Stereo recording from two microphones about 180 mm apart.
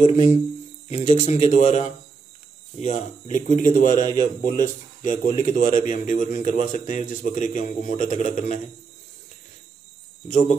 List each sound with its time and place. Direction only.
0.0 s speech: 40° left (ahead or behind)